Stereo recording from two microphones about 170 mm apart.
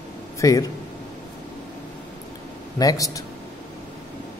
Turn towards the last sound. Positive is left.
turn(degrees=20)  # may be behind; listen again after turning